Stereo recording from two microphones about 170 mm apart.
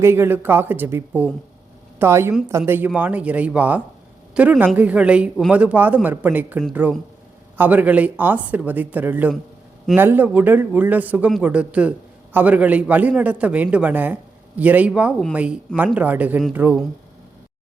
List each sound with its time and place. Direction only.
0.0 s a man's voice: 15° right (ahead or behind)